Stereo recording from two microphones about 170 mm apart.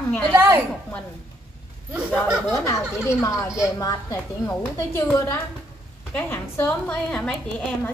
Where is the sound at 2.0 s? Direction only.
5° right (ahead or behind).